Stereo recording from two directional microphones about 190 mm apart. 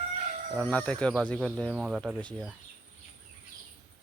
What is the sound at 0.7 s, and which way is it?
Speech, 5° left (ahead or behind).